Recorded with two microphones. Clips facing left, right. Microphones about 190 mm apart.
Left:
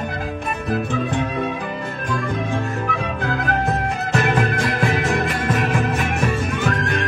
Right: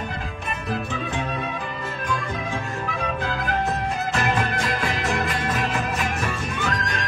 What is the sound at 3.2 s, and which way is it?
Music, 60° left (ahead or behind).